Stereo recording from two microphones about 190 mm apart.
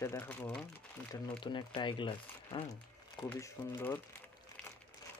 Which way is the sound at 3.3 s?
15° left (ahead or behind).